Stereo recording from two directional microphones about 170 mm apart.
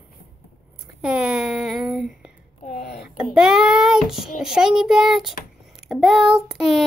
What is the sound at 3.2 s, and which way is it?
Child singing, 5° right (ahead or behind).